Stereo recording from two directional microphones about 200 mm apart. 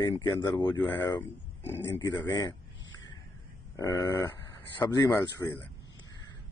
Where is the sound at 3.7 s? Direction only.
15° left (ahead or behind).